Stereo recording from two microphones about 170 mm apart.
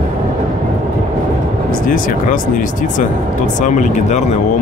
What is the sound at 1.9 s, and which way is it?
Speech, 55° left (ahead or behind).